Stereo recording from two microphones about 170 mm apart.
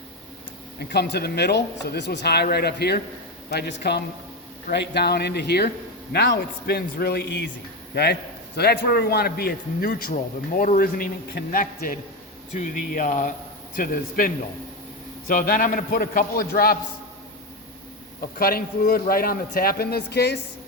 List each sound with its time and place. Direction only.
0.8 s speech: 80° left
7.9 s a man's voice: 70° left (ahead or behind)
18.3 s a man's voice: 60° left (ahead or behind)